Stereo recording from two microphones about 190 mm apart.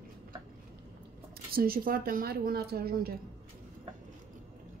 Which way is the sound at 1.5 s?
50° right (ahead or behind).